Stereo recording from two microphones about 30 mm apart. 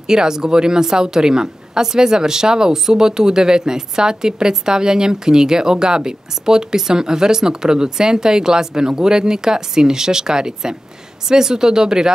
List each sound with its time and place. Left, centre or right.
0.0 s a woman's voice: right